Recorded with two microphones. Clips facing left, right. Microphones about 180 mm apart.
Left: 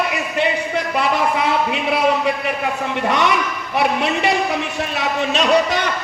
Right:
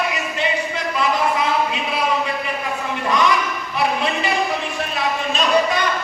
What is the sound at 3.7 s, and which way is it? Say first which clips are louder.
Speech: left 3 dB; 75° left (ahead or behind).